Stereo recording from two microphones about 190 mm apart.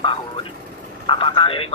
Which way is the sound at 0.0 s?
30° left (ahead or behind).